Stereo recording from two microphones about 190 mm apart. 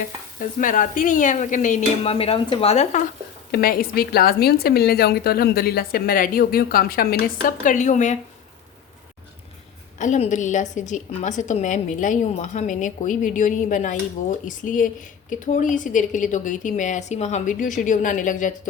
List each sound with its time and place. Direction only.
0.6 s a woman's voice: 45° left (ahead or behind)
2.1 s a woman's voice: 30° left (ahead or behind)
3.5 s a woman's voice: 50° left (ahead or behind)
10.0 s a woman's voice: 40° left (ahead or behind)